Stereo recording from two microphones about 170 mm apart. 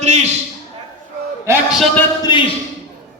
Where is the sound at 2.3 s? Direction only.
25° left (ahead or behind).